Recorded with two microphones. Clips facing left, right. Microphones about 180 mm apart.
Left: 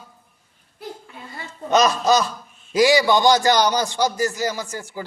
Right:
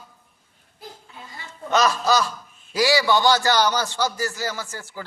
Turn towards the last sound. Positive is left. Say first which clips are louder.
# left 4 dB
turn(degrees=15)  # may be behind; listen again after turning